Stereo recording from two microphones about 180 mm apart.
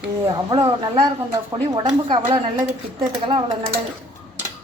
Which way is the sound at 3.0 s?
25° right (ahead or behind).